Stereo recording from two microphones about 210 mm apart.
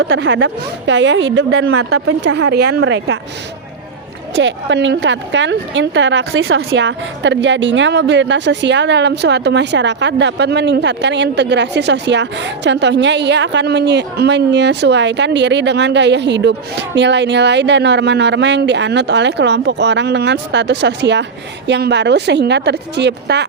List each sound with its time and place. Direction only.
0.0 s a woman's voice: 60° right (ahead or behind); by 2.1 s 90° right
2.2 s a woman's voice: 55° right (ahead or behind)
4.4 s a woman's voice: 60° right (ahead or behind)